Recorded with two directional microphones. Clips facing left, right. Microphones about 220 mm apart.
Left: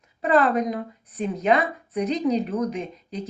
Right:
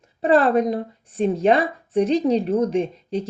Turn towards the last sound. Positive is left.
turn(degrees=-30)  # may be behind; listen again after turning